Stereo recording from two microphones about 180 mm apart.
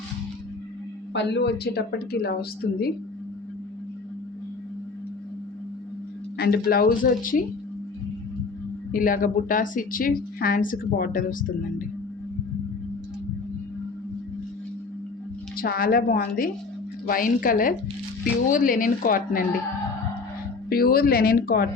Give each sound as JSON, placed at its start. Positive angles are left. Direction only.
{"t": 1.1, "sound": "a woman's voice", "side_deg": 75}
{"t": 6.3, "sound": "a sound", "side_deg": 60}
{"t": 6.7, "sound": "a woman's voice", "side_deg": 55}
{"t": 8.9, "sound": "a woman's voice", "side_deg": 50}
{"t": 15.5, "sound": "a woman's voice", "side_deg": 55}
{"t": 20.7, "sound": "a woman's voice", "side_deg": 55}